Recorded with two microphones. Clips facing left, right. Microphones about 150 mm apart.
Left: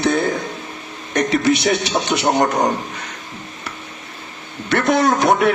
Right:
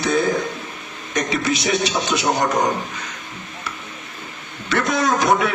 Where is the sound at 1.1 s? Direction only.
60° left (ahead or behind).